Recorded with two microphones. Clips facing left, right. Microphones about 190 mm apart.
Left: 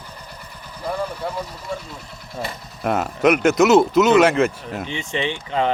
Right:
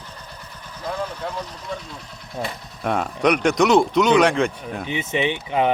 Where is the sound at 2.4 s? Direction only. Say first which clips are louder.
Left 1 dB; 5° left (ahead or behind).